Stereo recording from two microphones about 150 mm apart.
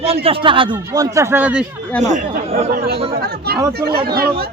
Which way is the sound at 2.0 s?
50° right (ahead or behind).